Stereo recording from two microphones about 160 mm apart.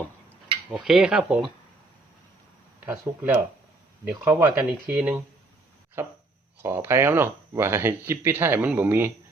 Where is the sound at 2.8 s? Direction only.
10° right (ahead or behind).